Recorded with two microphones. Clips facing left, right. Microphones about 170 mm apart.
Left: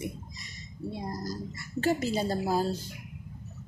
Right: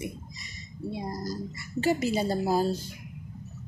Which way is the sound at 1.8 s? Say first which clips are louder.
Right 2 dB; 5° right (ahead or behind).